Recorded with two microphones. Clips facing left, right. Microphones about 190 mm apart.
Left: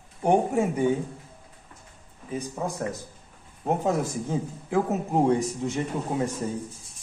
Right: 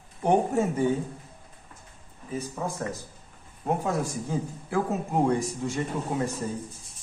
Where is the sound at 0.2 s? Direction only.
15° left (ahead or behind).